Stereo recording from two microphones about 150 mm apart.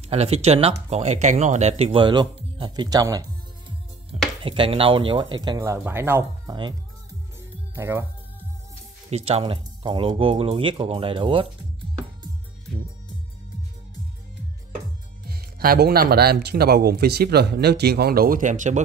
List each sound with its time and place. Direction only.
0.1 s speech: 45° right (ahead or behind); by 3.3 s 25° right (ahead or behind)
4.4 s speech: 35° right (ahead or behind); by 6.5 s 15° right (ahead or behind)
7.7 s speech: 20° right (ahead or behind)
9.1 s speech: 40° right (ahead or behind)
15.2 s speech: 85° right; by 18.8 s 55° right (ahead or behind)